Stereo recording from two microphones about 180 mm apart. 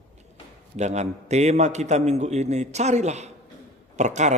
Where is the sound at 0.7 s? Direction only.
40° right (ahead or behind).